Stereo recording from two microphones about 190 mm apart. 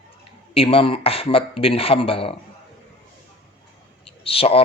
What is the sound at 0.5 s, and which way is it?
Speech, 30° left (ahead or behind).